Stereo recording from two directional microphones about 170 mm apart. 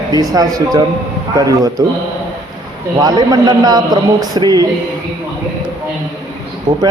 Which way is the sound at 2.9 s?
25° right (ahead or behind).